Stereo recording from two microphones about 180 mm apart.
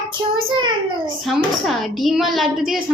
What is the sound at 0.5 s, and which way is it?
Speech, 25° right (ahead or behind).